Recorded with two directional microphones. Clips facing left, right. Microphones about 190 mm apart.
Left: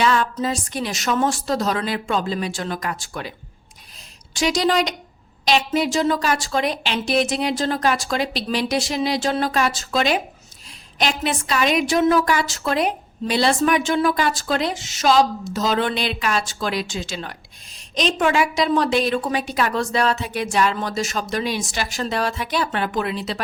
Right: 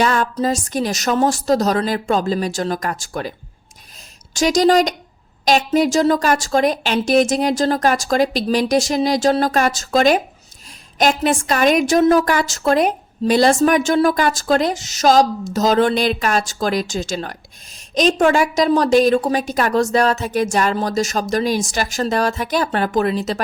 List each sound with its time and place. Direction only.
0.0 s a woman's voice: 45° right (ahead or behind)
4.4 s a woman's voice: 45° right (ahead or behind)